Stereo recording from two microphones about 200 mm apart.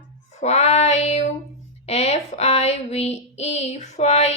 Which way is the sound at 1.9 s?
35° left (ahead or behind).